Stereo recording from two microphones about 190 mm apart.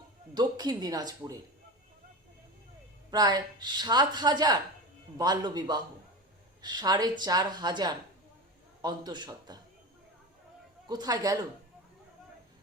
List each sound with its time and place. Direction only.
0.3 s a woman's voice: 20° right (ahead or behind)
3.1 s a woman's voice: 20° right (ahead or behind)
10.8 s a woman's voice: 20° right (ahead or behind)